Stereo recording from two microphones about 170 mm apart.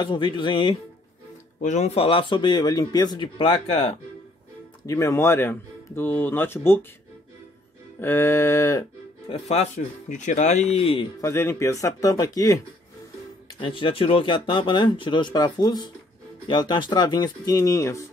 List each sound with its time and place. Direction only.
0.0 s speech: 25° left (ahead or behind)
1.6 s speech: 45° left (ahead or behind)
4.8 s speech: 15° left (ahead or behind)
8.0 s speech: 15° left (ahead or behind)
9.3 s speech: 40° left (ahead or behind)
11.1 s speech: 15° left (ahead or behind)